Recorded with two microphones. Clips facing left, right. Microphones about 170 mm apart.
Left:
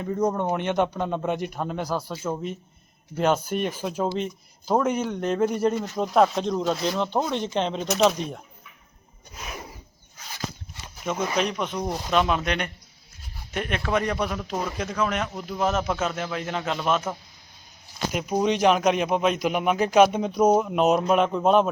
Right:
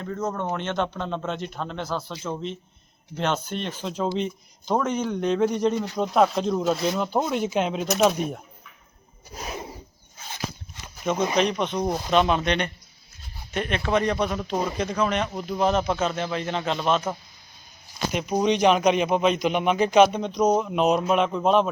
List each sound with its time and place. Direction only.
0.0 s speech: 15° left (ahead or behind); by 8.1 s 5° right (ahead or behind)
9.3 s a sound: 35° right (ahead or behind)
11.1 s speech: 20° right (ahead or behind)
11.3 s speech: 5° left (ahead or behind)
14.5 s speech: 15° right (ahead or behind)
14.8 s speech: 5° left (ahead or behind)
18.1 s speech: 5° left (ahead or behind)